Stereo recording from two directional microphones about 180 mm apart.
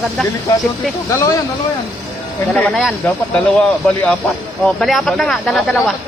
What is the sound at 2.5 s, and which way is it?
A man's voice, 5° left (ahead or behind).